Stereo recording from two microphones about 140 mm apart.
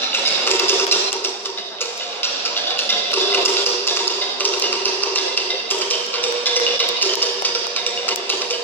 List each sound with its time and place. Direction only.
0.1 s music: 15° left (ahead or behind)
6.4 s music: 15° left (ahead or behind)